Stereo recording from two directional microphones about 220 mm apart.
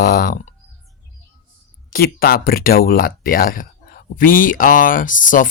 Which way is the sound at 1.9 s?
40° left (ahead or behind).